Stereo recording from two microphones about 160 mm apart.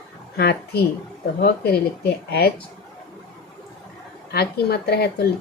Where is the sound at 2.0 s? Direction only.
85° left.